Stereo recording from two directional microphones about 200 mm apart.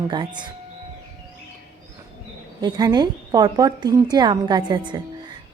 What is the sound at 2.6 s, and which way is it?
A woman's voice, 20° right (ahead or behind).